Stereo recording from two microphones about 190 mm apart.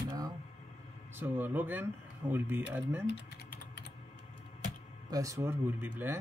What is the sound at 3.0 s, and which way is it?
Typing, 60° left (ahead or behind).